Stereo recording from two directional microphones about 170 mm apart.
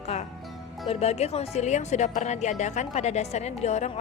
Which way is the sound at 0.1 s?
40° left (ahead or behind).